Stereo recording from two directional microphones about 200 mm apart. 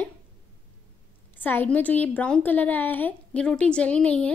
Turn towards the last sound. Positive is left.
turn(degrees=5)  # may be behind; listen again after turning